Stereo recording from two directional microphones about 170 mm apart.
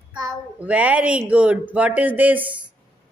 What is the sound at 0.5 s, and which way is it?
A man's voice, 10° right (ahead or behind).